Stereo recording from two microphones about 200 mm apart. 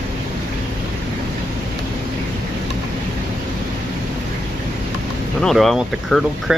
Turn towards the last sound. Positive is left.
turn(degrees=0)  # may be behind; listen again after turning